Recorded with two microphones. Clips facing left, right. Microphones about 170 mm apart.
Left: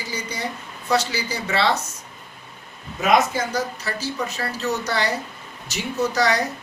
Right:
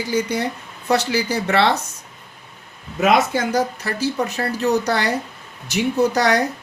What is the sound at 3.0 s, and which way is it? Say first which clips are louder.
Speech: right 2 dB; 55° right (ahead or behind).